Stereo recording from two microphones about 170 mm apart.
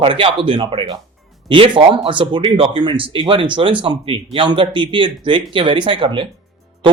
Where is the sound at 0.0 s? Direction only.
30° right (ahead or behind).